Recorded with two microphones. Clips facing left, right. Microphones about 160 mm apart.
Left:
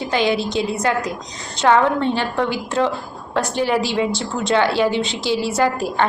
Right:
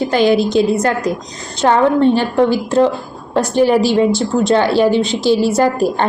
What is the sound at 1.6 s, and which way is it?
Speech, 30° right (ahead or behind).